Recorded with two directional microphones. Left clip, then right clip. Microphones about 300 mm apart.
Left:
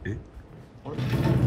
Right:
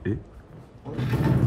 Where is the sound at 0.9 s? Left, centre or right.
Centre.